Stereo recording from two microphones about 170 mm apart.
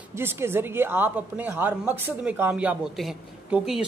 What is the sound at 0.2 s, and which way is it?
A woman's voice, 15° right (ahead or behind).